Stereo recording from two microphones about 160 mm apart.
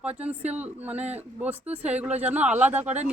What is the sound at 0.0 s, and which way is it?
Speech, 10° right (ahead or behind).